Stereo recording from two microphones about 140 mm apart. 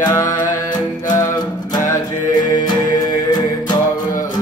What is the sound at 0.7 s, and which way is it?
Music, 30° left (ahead or behind).